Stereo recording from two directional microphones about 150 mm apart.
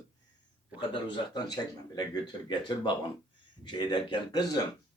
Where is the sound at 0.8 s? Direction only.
30° left (ahead or behind).